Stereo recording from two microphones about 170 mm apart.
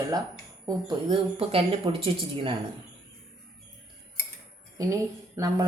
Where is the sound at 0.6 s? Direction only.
30° right (ahead or behind).